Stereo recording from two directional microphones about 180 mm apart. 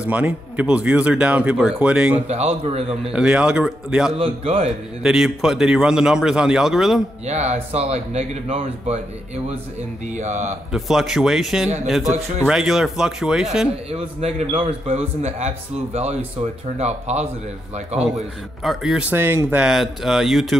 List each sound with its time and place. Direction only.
0.0 s speech: 5° right (ahead or behind)
2.2 s a man's voice: 35° right (ahead or behind)
3.0 s speech: 5° right (ahead or behind)
4.2 s a man's voice: 30° right (ahead or behind)
5.0 s speech: centre (ahead or behind)
7.2 s a man's voice: 40° right (ahead or behind)
10.0 s a man's voice: 40° right (ahead or behind)
10.7 s speech: centre (ahead or behind)
13.8 s a man's voice: 35° right (ahead or behind)
18.6 s speech: centre (ahead or behind)